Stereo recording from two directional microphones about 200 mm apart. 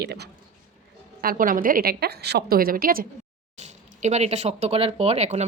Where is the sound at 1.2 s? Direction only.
45° right (ahead or behind).